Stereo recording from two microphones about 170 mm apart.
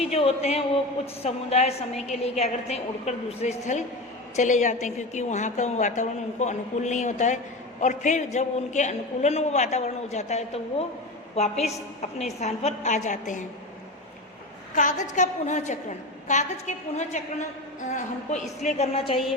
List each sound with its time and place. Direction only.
0.0 s a woman's voice: 35° left (ahead or behind)
14.8 s a man's voice: 45° left (ahead or behind)